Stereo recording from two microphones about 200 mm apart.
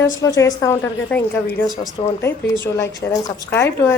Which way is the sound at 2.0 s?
25° left (ahead or behind).